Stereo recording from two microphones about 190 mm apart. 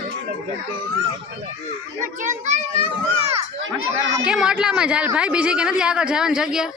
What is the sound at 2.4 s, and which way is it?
A child's voice, 35° right (ahead or behind).